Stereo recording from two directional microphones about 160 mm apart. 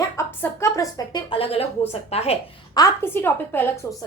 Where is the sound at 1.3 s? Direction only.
40° left (ahead or behind).